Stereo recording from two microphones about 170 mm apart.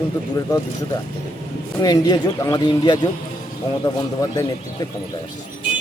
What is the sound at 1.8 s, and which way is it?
Speech, 25° left (ahead or behind).